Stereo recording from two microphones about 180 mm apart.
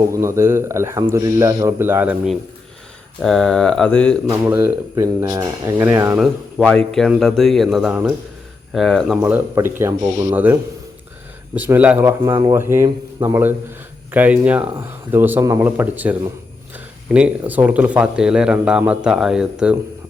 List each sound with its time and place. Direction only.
0.0 s speech: 15° right (ahead or behind)
3.2 s speech: centre (ahead or behind)
4.4 s speech: 15° right (ahead or behind)
6.1 s speech: centre (ahead or behind)
9.2 s speech: 10° right (ahead or behind)
12.0 s speech: 20° right (ahead or behind)
12.5 s speech: 15° right (ahead or behind)